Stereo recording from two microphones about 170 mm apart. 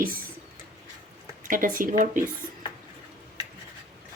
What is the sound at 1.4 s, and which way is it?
Speech, 55° right (ahead or behind).